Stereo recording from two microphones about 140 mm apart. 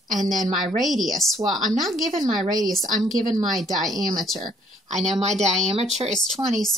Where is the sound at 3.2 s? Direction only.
70° right (ahead or behind).